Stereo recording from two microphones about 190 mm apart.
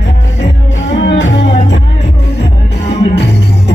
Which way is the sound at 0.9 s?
70° left (ahead or behind).